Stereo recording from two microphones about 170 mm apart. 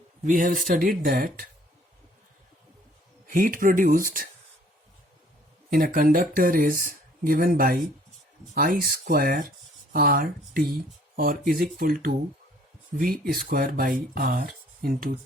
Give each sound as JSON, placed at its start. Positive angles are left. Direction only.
{"t": 0.3, "sound": "speech", "side_deg": -55}
{"t": 3.2, "sound": "speech", "side_deg": -55}
{"t": 5.7, "sound": "speech", "side_deg": -55}